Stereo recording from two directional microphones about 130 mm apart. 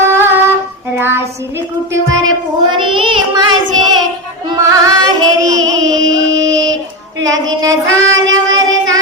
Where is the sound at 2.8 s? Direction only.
40° right (ahead or behind).